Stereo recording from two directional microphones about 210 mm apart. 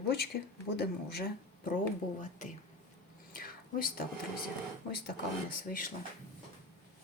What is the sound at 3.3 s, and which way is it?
Whispering, 45° left (ahead or behind).